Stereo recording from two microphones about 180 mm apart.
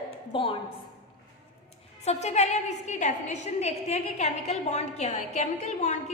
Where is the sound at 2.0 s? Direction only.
35° left (ahead or behind).